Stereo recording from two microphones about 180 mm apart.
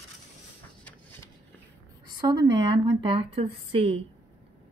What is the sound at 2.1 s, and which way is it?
Speech, 25° right (ahead or behind).